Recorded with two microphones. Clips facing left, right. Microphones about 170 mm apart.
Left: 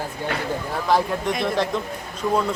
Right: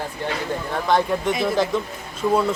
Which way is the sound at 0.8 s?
Centre (ahead or behind).